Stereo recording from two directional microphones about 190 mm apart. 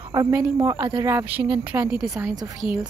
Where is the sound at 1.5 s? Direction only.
25° right (ahead or behind).